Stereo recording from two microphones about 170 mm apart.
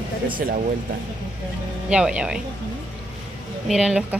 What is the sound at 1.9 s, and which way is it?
Speech, 5° right (ahead or behind).